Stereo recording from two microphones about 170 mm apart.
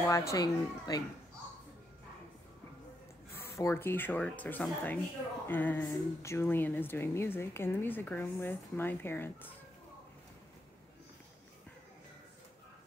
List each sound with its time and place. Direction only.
0.1 s speech: 15° left (ahead or behind)
3.3 s speech: 15° left (ahead or behind)